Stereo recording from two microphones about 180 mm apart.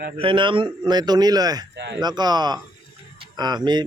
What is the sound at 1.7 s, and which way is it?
Speech, 80° right.